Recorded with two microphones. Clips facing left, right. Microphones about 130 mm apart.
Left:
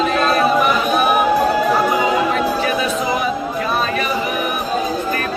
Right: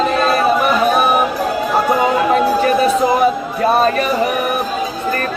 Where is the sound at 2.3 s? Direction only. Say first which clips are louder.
Right 5 dB; 40° right (ahead or behind).